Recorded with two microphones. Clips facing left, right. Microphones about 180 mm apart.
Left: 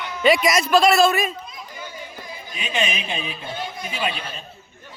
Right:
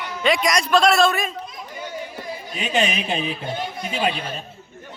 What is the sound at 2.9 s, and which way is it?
Speech, 40° right (ahead or behind).